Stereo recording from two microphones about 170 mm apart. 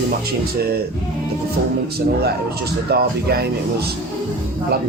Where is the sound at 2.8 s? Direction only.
65° right (ahead or behind).